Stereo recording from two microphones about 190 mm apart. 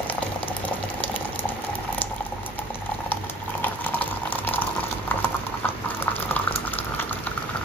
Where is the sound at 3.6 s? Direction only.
10° left (ahead or behind).